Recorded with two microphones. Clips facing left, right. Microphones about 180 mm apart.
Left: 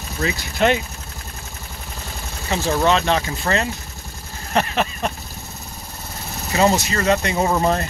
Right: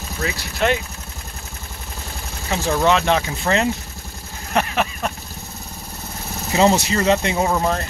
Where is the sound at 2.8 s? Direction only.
15° right (ahead or behind).